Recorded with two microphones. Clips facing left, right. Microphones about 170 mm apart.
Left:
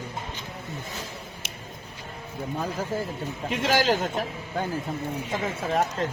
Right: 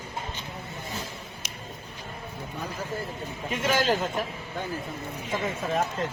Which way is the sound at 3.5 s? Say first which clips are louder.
Left 2 dB; 80° left.